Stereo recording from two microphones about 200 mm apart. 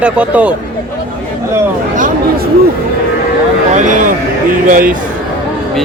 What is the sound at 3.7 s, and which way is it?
A man's voice, 40° right (ahead or behind).